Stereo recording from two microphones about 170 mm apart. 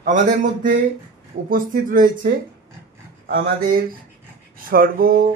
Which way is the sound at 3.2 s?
60° right (ahead or behind).